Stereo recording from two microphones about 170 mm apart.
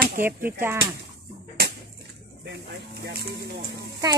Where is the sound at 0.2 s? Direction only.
15° right (ahead or behind).